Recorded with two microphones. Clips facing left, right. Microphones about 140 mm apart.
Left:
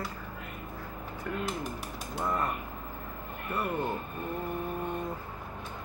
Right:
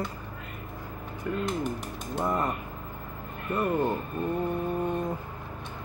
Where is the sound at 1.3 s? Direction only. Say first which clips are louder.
Right 5 dB; 20° right (ahead or behind).